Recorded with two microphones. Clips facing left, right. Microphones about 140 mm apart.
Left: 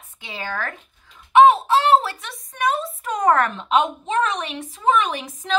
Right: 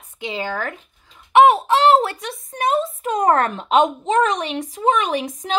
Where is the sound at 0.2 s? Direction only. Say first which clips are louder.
Right 4 dB; 15° right (ahead or behind).